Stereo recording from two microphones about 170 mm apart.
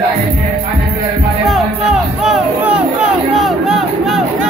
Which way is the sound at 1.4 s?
Centre (ahead or behind).